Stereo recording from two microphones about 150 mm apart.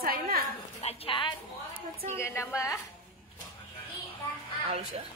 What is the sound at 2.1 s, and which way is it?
Speech, 15° left (ahead or behind).